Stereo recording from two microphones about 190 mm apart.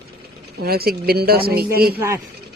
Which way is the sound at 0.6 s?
55° right (ahead or behind).